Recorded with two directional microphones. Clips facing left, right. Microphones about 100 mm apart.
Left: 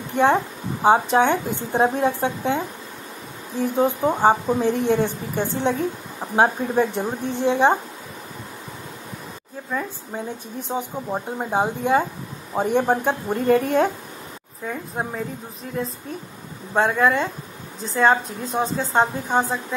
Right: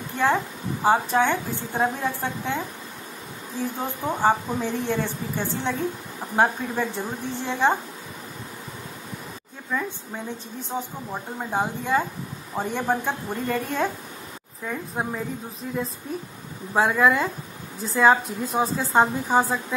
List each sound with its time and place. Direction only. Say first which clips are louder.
0.1 s a woman's voice: left 5 dB; 20° left (ahead or behind)
9.7 s speech: left 1 dB; 15° left (ahead or behind)
14.7 s a woman's voice: left 1 dB; centre (ahead or behind)
16.7 s a woman's voice: left 1 dB; 5° right (ahead or behind)